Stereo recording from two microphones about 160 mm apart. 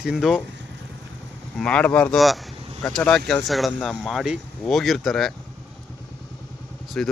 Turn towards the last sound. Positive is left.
turn(degrees=5)  # may be behind; listen again after turning